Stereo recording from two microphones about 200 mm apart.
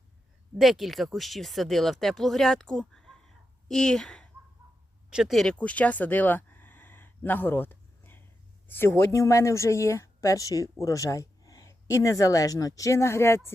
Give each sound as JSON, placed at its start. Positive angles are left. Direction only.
{"t": 0.6, "sound": "a woman's voice", "side_deg": 0}